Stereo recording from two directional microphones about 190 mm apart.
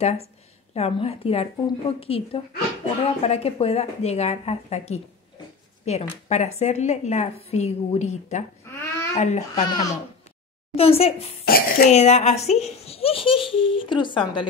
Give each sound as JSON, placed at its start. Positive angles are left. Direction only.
{"t": 0.0, "sound": "a woman's voice", "side_deg": 35}
{"t": 9.7, "sound": "speech", "side_deg": 20}
{"t": 10.7, "sound": "a woman's voice", "side_deg": 30}
{"t": 11.4, "sound": "speech", "side_deg": 50}
{"t": 11.9, "sound": "a child's voice", "side_deg": 35}